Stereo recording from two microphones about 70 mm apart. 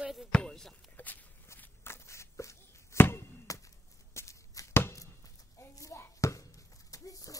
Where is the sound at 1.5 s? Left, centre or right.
Left.